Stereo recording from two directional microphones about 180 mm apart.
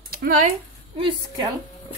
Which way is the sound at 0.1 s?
55° right (ahead or behind).